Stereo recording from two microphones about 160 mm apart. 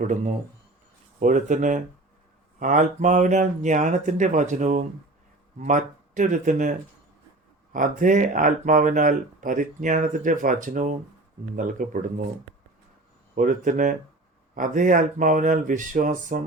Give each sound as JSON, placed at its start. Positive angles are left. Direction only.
{"t": 0.0, "sound": "speech", "side_deg": -50}
{"t": 13.3, "sound": "speech", "side_deg": -55}